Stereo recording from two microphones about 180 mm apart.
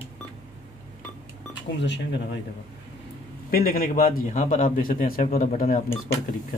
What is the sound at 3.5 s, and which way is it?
A man's voice, 55° left (ahead or behind).